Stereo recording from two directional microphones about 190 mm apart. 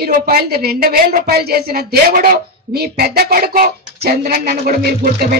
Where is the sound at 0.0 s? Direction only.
50° right (ahead or behind).